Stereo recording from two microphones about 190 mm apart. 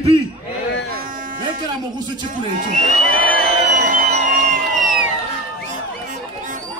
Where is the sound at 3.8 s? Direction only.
45° right (ahead or behind).